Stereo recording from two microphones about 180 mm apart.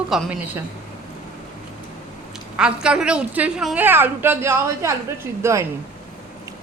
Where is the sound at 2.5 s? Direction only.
5° right (ahead or behind).